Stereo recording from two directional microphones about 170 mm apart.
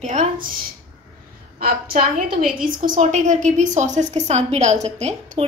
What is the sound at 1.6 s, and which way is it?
A woman's voice, 60° right (ahead or behind).